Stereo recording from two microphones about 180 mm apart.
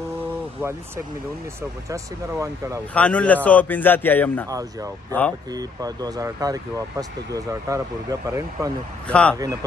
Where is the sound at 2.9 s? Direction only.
5° left (ahead or behind).